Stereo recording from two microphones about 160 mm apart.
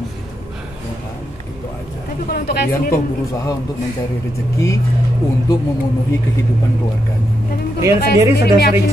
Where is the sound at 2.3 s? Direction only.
75° left (ahead or behind).